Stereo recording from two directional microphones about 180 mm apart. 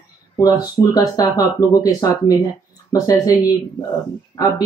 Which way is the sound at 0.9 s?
20° left (ahead or behind).